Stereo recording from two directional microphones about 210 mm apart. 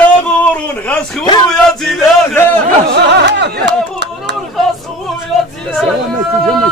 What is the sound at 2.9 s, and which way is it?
Music, 55° right (ahead or behind).